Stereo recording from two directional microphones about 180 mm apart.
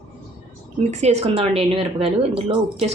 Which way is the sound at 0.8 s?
35° right (ahead or behind).